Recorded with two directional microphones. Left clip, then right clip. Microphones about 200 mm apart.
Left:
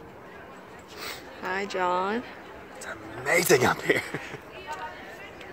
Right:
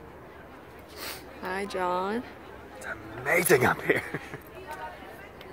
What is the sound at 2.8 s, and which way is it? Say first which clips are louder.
Speech: even; 10° left (ahead or behind).